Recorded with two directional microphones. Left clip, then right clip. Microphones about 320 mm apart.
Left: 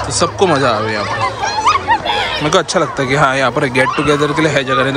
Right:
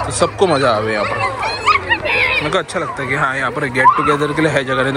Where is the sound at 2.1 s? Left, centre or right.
Centre.